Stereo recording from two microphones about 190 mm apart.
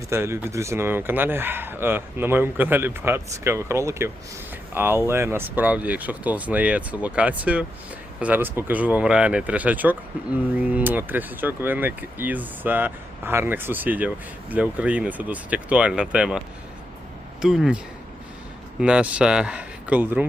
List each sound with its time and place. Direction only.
0.1 s speech: 15° right (ahead or behind)
17.4 s speech: 5° right (ahead or behind)
18.8 s speech: 5° right (ahead or behind)